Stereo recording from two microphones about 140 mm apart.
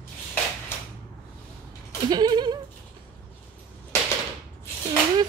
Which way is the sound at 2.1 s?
30° right (ahead or behind).